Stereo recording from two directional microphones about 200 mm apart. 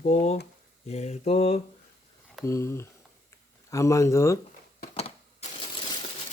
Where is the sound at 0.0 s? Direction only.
35° left (ahead or behind).